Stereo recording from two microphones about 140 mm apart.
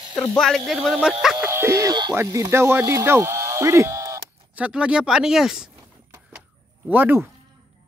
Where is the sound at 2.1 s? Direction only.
20° right (ahead or behind).